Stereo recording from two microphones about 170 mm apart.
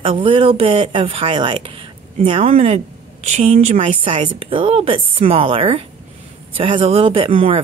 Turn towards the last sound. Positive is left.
turn(degrees=-35)  # may be behind; listen again after turning